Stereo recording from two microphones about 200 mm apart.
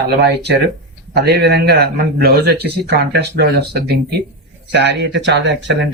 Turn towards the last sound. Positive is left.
turn(degrees=-65)  # may be behind; listen again after turning